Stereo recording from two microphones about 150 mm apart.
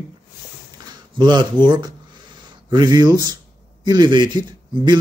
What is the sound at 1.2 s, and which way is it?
Speech, 30° right (ahead or behind).